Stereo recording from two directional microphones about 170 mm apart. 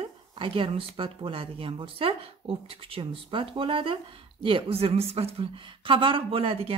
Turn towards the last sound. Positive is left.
turn(degrees=-35)  # may be behind; listen again after turning